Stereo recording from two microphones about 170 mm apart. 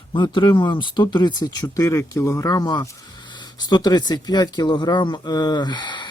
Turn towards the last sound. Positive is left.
turn(degrees=25)  # may be behind; listen again after turning